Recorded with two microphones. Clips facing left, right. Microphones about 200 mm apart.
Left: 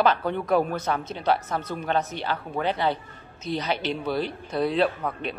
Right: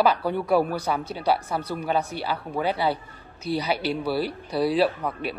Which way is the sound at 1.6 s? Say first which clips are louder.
Right 2 dB; 35° right (ahead or behind).